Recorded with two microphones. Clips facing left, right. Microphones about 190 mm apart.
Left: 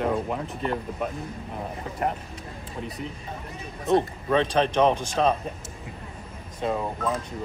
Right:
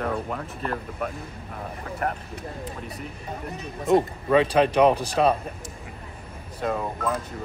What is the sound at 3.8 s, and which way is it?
Speech, 5° right (ahead or behind).